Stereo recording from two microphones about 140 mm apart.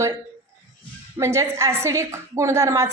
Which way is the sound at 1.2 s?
20° right (ahead or behind).